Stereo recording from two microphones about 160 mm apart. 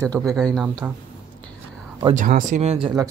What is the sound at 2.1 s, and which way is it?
Speech, 55° right (ahead or behind).